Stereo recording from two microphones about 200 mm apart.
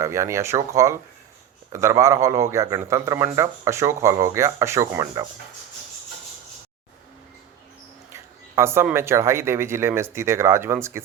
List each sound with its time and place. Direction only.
0.0 s speech: 15° right (ahead or behind)
8.1 s speech: 10° right (ahead or behind)